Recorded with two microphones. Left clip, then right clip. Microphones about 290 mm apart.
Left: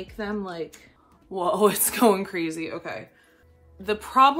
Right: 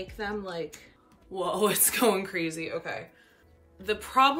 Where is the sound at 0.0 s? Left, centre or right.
Left.